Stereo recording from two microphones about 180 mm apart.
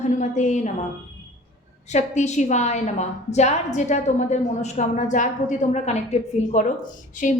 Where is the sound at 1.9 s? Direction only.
40° left (ahead or behind).